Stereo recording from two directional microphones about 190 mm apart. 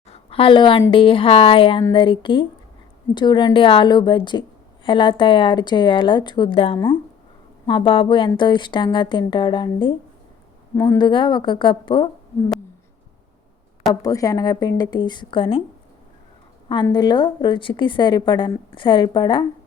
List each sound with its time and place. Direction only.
0.1 s a sound: 30° left (ahead or behind)
0.9 s a woman's voice: 25° left (ahead or behind)
14.0 s a woman's voice: 20° left (ahead or behind)
16.8 s a woman's voice: 20° left (ahead or behind)